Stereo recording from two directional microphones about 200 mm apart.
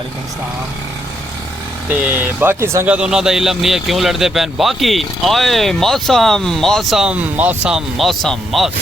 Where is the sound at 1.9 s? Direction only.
10° right (ahead or behind).